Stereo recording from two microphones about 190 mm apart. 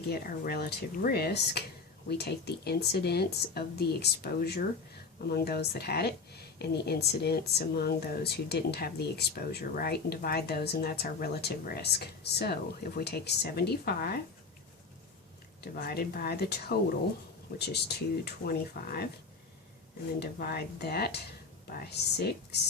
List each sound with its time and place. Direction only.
0.1 s speech: 55° left (ahead or behind)
15.6 s speech: 55° left (ahead or behind)
20.1 s speech: 55° left (ahead or behind)